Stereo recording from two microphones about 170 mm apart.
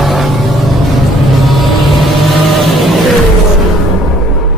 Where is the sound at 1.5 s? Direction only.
Centre (ahead or behind).